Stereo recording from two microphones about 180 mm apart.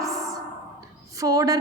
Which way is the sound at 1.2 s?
20° right (ahead or behind).